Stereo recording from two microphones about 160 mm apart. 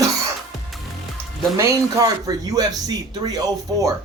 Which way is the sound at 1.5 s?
20° right (ahead or behind).